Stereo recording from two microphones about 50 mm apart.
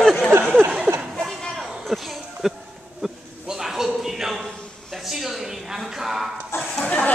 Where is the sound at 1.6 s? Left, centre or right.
Centre.